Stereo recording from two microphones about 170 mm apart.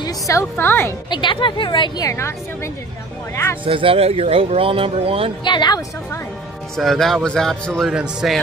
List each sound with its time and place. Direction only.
0.0 s a woman's voice: 15° left (ahead or behind)
1.1 s a woman's voice: 30° left (ahead or behind)
3.6 s speech: 30° right (ahead or behind)
5.4 s a woman's voice: 25° left (ahead or behind)
6.8 s speech: centre (ahead or behind)